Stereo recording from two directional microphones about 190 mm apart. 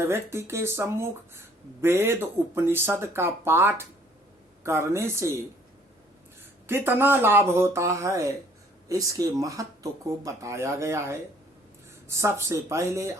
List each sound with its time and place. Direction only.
0.0 s speech: 15° right (ahead or behind)
6.7 s speech: 10° right (ahead or behind)